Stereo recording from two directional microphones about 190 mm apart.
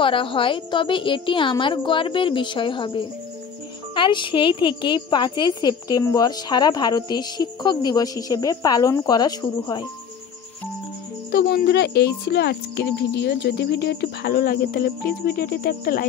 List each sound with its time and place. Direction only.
0.0 s a woman's voice: 25° left (ahead or behind)
11.3 s speech: 55° left (ahead or behind)